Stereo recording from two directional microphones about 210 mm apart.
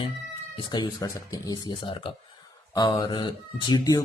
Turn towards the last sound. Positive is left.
turn(degrees=20)  # may be behind; listen again after turning